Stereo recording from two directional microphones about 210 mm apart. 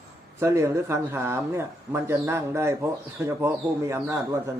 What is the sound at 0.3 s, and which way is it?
Speech, 15° right (ahead or behind).